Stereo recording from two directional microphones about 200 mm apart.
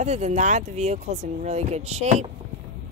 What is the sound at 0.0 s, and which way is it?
Speech, 35° right (ahead or behind).